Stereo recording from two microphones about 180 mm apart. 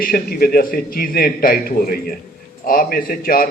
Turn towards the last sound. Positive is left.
turn(degrees=50)  # may be behind; listen again after turning